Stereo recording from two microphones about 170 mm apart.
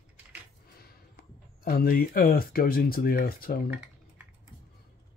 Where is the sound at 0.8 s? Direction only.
60° left (ahead or behind).